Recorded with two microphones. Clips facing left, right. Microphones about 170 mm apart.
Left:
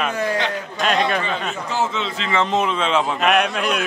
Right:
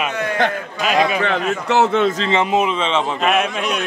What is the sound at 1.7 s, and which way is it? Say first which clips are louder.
Speech: right 9 dB; 65° right (ahead or behind).